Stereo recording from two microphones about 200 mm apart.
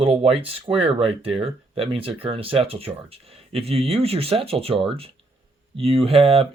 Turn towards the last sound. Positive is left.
turn(degrees=-30)  # may be behind; listen again after turning